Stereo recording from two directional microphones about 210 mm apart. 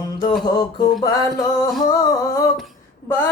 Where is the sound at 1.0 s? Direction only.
20° left (ahead or behind).